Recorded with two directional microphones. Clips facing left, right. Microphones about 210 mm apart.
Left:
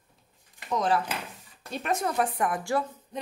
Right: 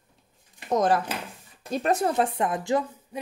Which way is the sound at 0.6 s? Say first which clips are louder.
Right 4 dB; 45° right (ahead or behind).